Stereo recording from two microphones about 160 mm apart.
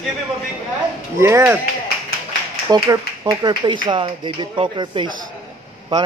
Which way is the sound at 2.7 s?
25° right (ahead or behind).